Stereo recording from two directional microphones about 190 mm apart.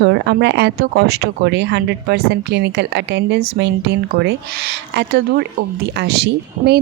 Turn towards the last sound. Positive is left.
turn(degrees=-60)  # may be behind; listen again after turning